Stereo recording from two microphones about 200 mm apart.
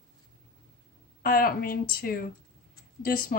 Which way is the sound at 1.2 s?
45° left (ahead or behind).